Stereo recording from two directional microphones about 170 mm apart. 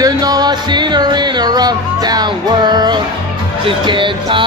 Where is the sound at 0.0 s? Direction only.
20° right (ahead or behind).